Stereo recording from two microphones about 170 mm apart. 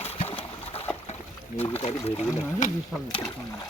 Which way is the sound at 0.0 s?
35° left (ahead or behind).